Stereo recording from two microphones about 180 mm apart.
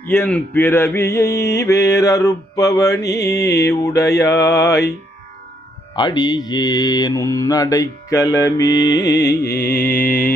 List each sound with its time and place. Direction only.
0.1 s speech: 10° left (ahead or behind)
3.0 s mantra: 65° left (ahead or behind)
3.5 s speech: 15° left (ahead or behind)
5.9 s mantra: 25° left (ahead or behind)
9.0 s music: 65° left (ahead or behind)
9.8 s speech: 10° left (ahead or behind)